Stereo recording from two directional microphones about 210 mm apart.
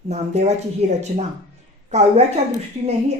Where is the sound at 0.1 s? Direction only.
30° right (ahead or behind).